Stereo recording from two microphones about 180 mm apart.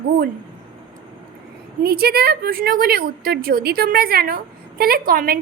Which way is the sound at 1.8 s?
60° right (ahead or behind).